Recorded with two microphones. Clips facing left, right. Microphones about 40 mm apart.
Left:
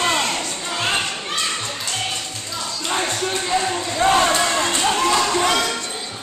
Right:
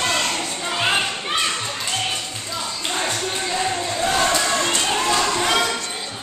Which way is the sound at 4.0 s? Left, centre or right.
Left.